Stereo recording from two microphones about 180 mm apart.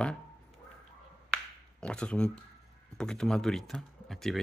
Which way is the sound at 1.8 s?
5° left (ahead or behind).